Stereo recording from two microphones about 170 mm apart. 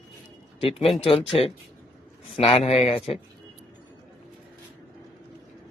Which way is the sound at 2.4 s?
35° left (ahead or behind).